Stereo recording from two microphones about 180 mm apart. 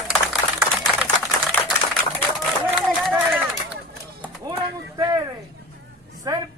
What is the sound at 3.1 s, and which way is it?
Run, 10° right (ahead or behind).